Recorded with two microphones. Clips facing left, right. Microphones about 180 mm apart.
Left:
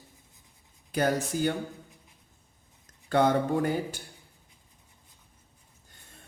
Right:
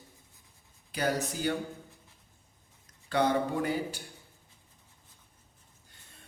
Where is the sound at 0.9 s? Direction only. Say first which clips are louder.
Left 4 dB; 50° left (ahead or behind).